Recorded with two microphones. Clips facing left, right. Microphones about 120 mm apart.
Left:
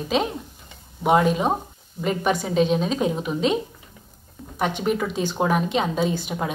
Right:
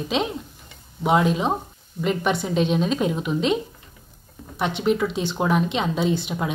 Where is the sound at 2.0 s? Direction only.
35° left (ahead or behind).